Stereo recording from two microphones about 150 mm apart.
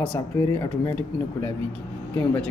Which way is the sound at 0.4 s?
20° left (ahead or behind).